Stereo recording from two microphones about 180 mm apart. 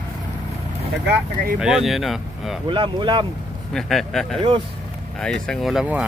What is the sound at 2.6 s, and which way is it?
Speech, 30° right (ahead or behind).